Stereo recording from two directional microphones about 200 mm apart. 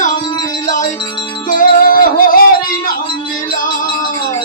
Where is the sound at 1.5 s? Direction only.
45° left (ahead or behind).